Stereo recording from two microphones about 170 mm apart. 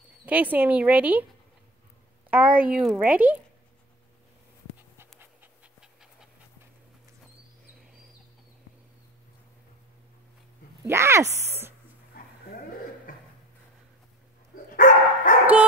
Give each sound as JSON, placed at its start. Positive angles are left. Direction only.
{"t": 0.2, "sound": "speech", "side_deg": -10}
{"t": 2.3, "sound": "speech", "side_deg": -10}
{"t": 5.2, "sound": "pant", "side_deg": -10}
{"t": 10.9, "sound": "speech", "side_deg": -15}
{"t": 14.5, "sound": "dog", "side_deg": 50}